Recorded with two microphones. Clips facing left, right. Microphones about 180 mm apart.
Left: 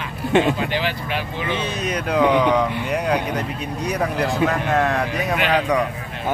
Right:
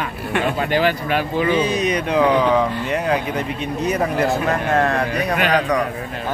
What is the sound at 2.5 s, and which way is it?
Speech, 5° right (ahead or behind).